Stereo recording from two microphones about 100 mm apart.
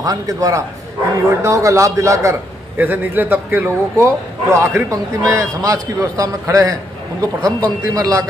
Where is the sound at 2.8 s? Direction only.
20° right (ahead or behind).